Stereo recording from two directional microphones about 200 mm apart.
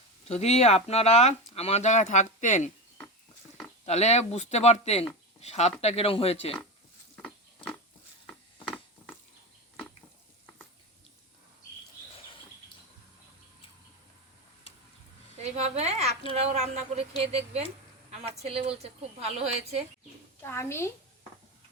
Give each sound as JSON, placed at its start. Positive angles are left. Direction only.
{"t": 0.3, "sound": "speech", "side_deg": 30}
{"t": 3.8, "sound": "speech", "side_deg": 35}
{"t": 7.2, "sound": "pig", "side_deg": 5}
{"t": 12.1, "sound": "a sound", "side_deg": 25}
{"t": 15.4, "sound": "a sound", "side_deg": -30}
{"t": 16.3, "sound": "a woman's voice", "side_deg": -30}
{"t": 20.4, "sound": "a woman's voice", "side_deg": 10}